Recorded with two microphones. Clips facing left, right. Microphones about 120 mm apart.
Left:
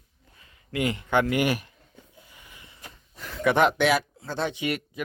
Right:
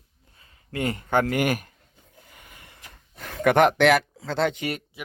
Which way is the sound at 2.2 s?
55° right (ahead or behind).